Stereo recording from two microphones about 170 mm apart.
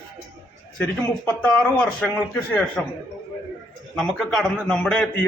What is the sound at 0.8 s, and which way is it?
Speech, 10° left (ahead or behind).